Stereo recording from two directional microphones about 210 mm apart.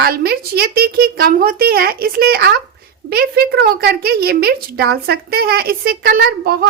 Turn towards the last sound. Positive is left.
turn(degrees=-45)  # may be behind; listen again after turning